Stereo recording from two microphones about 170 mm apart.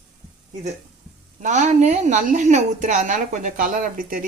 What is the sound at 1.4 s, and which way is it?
A woman's voice, 45° right (ahead or behind).